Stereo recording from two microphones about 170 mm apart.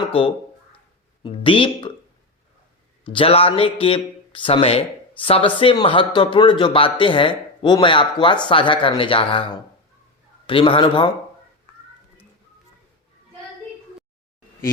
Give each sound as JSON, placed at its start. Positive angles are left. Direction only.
{"t": 1.2, "sound": "a man's voice", "side_deg": 30}
{"t": 3.0, "sound": "a man's voice", "side_deg": 30}